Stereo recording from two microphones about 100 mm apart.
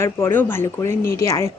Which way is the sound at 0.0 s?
25° left (ahead or behind).